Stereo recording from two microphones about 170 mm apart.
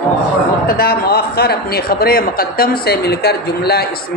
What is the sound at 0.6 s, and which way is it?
A man's voice, 60° left (ahead or behind).